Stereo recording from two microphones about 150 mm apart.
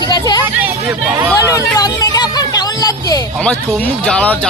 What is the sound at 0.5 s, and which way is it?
Hubbub, 10° right (ahead or behind).